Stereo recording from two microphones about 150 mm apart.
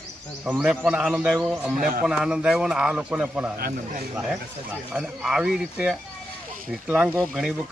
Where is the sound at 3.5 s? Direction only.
80° right.